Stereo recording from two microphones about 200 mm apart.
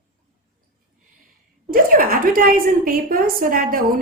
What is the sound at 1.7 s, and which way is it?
A woman's voice, 45° right (ahead or behind).